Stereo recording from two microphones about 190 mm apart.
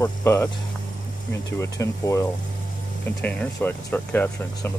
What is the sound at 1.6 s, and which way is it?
Speech, 15° left (ahead or behind).